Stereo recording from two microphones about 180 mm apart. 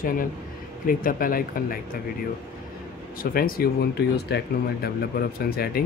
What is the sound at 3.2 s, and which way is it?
Speech, 55° left (ahead or behind).